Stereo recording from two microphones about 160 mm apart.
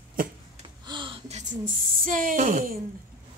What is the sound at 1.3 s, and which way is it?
A woman's voice, 50° right (ahead or behind).